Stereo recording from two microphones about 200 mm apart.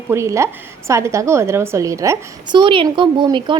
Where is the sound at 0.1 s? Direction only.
15° right (ahead or behind).